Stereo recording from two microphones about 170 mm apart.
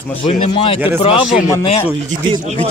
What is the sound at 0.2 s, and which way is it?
Speech, 35° left (ahead or behind).